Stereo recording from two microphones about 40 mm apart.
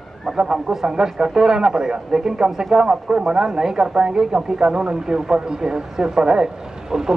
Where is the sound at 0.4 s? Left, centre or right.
Centre.